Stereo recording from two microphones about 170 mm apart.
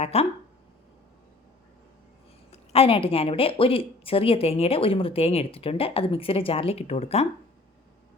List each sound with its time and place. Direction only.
0.0 s a woman's voice: 35° left (ahead or behind)
2.5 s a woman's voice: 35° left (ahead or behind)